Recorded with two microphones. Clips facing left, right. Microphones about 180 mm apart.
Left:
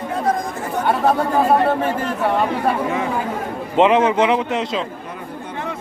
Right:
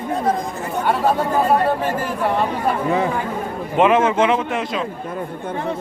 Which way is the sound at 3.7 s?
20° left (ahead or behind).